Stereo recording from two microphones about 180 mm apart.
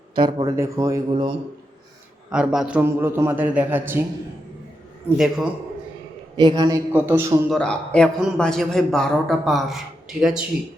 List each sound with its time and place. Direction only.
0.2 s a man's voice: 25° right (ahead or behind)
0.5 s a man's voice: 15° right (ahead or behind)
1.1 s a man's voice: 30° right (ahead or behind)
2.3 s a man's voice: 5° right (ahead or behind)
5.0 s a man's voice: 5° right (ahead or behind)
6.3 s a man's voice: 25° right (ahead or behind)
7.5 s a man's voice: 5° left (ahead or behind)